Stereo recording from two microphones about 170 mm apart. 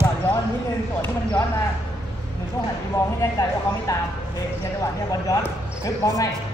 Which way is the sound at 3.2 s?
20° left (ahead or behind).